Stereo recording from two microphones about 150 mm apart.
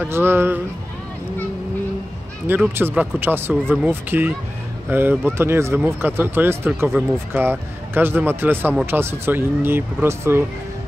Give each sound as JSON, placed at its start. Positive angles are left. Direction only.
{"t": 0.0, "sound": "speech", "side_deg": -15}
{"t": 2.4, "sound": "speech", "side_deg": -15}